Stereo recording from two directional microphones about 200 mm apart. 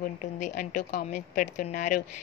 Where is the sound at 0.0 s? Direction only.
40° left (ahead or behind).